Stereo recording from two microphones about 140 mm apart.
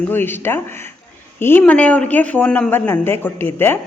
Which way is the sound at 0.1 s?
15° left (ahead or behind).